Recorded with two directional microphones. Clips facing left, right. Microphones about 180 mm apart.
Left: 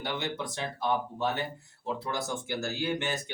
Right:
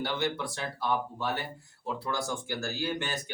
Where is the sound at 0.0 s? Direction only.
20° left (ahead or behind).